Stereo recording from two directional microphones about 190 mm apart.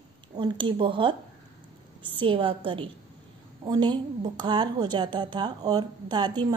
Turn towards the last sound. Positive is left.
turn(degrees=-25)  # may be behind; listen again after turning